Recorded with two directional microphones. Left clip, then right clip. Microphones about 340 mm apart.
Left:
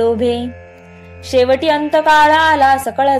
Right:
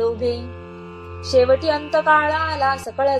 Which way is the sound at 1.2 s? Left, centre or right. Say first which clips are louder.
Left 3 dB; centre.